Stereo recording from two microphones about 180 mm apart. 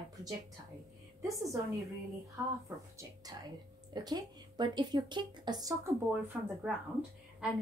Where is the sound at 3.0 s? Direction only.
20° right (ahead or behind).